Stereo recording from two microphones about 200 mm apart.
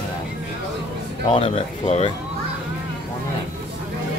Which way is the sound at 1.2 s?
30° left (ahead or behind).